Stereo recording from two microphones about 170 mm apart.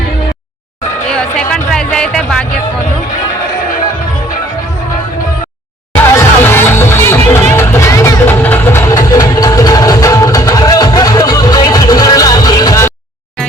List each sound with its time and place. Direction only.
1.1 s music: 5° left (ahead or behind)
6.1 s music: 15° left (ahead or behind)